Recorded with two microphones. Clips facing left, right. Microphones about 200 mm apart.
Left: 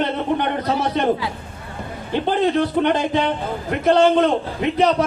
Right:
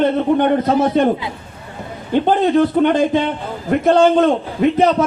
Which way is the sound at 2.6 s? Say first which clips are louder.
Right 5 dB; 50° right (ahead or behind).